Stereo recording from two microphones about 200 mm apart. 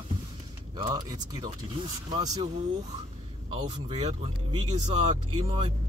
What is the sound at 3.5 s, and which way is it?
Speech, 25° right (ahead or behind).